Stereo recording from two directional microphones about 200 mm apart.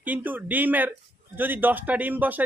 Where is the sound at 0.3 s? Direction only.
10° right (ahead or behind).